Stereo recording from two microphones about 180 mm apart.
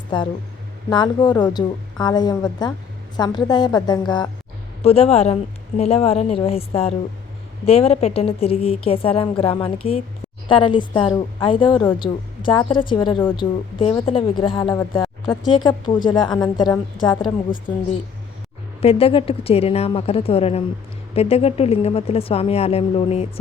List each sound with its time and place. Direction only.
0.1 s a woman's voice: 25° left (ahead or behind)
18.8 s a woman's voice: 35° left (ahead or behind)